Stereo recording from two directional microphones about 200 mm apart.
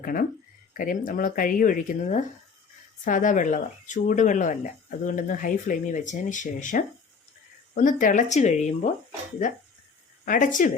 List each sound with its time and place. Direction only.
0.0 s speech: 45° left (ahead or behind)
10.2 s speech: 40° left (ahead or behind)